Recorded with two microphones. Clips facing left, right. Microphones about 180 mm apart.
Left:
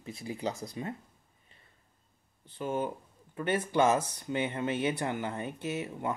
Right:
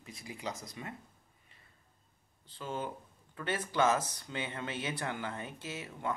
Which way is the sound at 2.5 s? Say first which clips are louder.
Left 6 dB; 15° left (ahead or behind).